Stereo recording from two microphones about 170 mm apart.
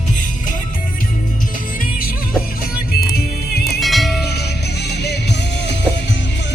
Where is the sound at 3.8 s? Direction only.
Centre (ahead or behind).